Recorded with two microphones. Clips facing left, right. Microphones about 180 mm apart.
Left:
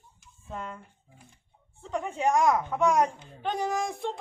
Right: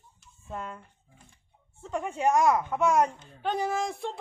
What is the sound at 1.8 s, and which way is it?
A woman's voice, 5° right (ahead or behind).